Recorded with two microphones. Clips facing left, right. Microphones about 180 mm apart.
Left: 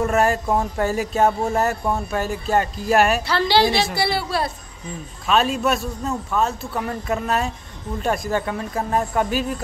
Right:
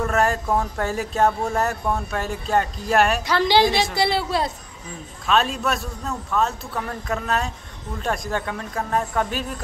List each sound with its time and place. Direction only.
0.0 s speech: 5° left (ahead or behind)
3.3 s a woman's voice: 15° right (ahead or behind)
5.2 s speech: 5° left (ahead or behind)